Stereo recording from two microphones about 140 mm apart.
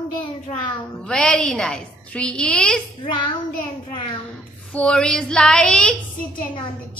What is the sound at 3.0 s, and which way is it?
Child singing, 35° left (ahead or behind).